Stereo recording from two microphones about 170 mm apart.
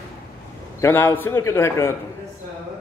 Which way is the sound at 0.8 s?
15° left (ahead or behind).